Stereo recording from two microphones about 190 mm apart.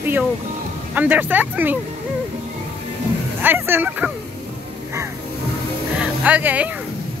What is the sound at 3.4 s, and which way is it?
Speech, 10° right (ahead or behind).